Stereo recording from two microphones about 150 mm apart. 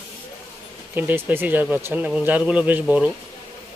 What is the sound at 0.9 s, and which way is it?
Speech, 10° right (ahead or behind).